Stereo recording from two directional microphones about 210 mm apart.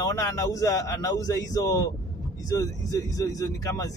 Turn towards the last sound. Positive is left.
turn(degrees=15)  # may be behind; listen again after turning